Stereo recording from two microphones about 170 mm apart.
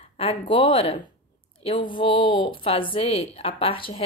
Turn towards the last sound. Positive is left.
turn(degrees=30)  # may be behind; listen again after turning